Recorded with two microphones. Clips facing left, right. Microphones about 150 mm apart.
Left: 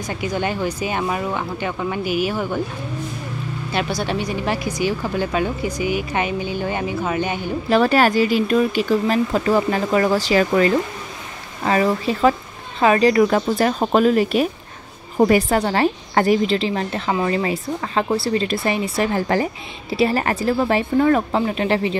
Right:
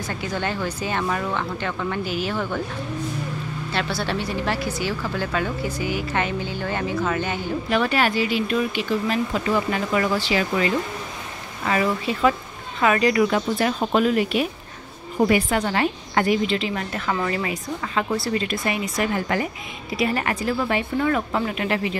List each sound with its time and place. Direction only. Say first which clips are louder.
0.0 s speech: left 4 dB; 15° left (ahead or behind)
3.7 s speech: left 3 dB; 15° left (ahead or behind)
7.7 s a woman's voice: left 6 dB; 40° left (ahead or behind)